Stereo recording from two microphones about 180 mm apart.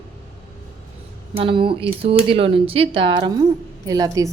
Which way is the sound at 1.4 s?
30° right (ahead or behind).